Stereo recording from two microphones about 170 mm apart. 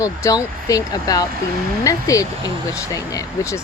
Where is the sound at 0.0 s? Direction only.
20° left (ahead or behind).